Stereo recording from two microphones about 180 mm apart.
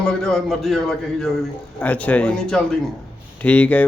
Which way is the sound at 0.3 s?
Centre (ahead or behind).